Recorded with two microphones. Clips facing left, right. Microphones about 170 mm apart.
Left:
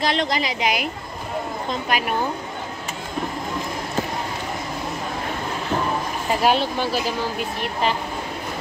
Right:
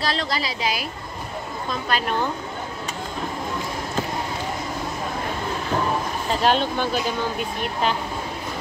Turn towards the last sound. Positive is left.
turn(degrees=5)  # may be behind; listen again after turning